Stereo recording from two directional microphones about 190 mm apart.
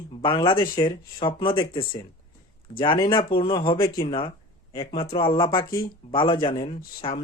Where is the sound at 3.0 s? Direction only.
30° left (ahead or behind).